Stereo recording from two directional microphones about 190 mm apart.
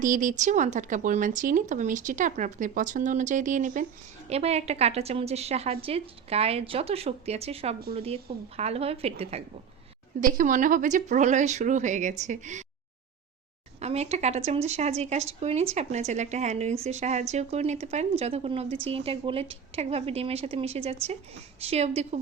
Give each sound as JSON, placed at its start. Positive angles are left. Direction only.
{"t": 0.0, "sound": "speech", "side_deg": -45}
{"t": 10.2, "sound": "speech", "side_deg": -45}
{"t": 13.7, "sound": "speech", "side_deg": -35}